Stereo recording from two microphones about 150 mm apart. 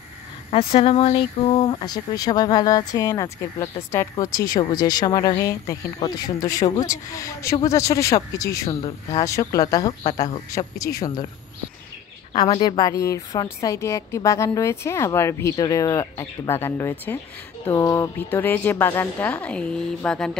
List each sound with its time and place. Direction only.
0.5 s speech: 40° left (ahead or behind)
1.7 s a woman's voice: 25° left (ahead or behind)
12.4 s a woman's voice: 25° left (ahead or behind); by 20.3 s 5° left (ahead or behind)